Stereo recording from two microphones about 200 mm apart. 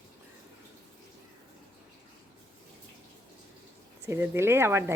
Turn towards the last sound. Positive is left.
turn(degrees=-10)  # may be behind; listen again after turning